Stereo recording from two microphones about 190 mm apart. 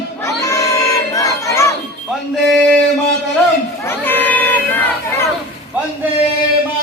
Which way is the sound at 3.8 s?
10° left (ahead or behind).